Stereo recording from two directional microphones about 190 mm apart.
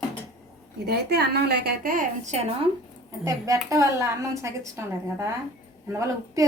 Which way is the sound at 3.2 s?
20° right (ahead or behind).